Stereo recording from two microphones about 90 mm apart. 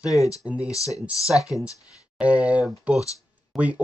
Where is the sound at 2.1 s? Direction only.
15° right (ahead or behind).